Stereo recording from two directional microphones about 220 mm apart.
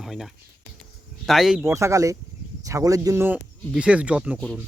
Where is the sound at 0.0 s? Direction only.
Centre (ahead or behind).